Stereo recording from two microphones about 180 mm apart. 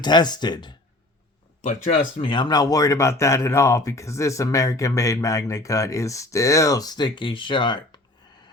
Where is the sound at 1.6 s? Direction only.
45° left (ahead or behind).